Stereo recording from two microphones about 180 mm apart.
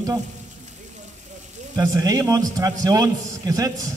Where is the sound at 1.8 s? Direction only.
20° right (ahead or behind).